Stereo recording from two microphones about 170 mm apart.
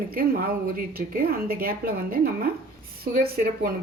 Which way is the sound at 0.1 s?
60° right (ahead or behind).